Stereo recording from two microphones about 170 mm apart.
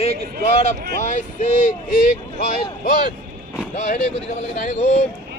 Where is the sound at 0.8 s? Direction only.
70° right (ahead or behind).